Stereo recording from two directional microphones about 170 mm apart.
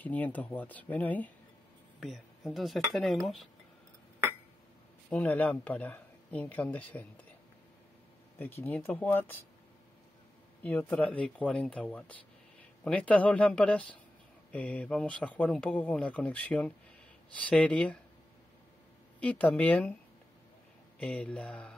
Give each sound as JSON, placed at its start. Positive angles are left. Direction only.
{"t": 0.0, "sound": "speech", "side_deg": 10}
{"t": 2.0, "sound": "speech", "side_deg": 0}
{"t": 5.1, "sound": "speech", "side_deg": 10}
{"t": 8.4, "sound": "speech", "side_deg": 10}
{"t": 10.6, "sound": "speech", "side_deg": 10}
{"t": 19.1, "sound": "speech", "side_deg": 10}
{"t": 21.0, "sound": "speech", "side_deg": 5}